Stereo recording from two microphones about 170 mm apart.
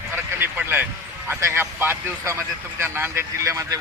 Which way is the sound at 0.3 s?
10° right (ahead or behind).